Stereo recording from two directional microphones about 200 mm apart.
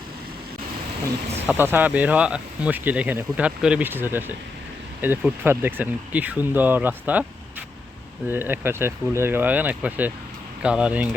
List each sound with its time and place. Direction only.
1.4 s speech: 10° right (ahead or behind)
8.3 s speech: 10° right (ahead or behind)